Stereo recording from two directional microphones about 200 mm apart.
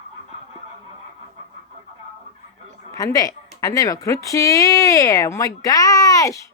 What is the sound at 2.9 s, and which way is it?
Speech, 20° left (ahead or behind).